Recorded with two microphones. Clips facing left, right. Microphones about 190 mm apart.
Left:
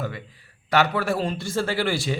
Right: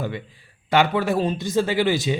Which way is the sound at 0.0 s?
25° right (ahead or behind).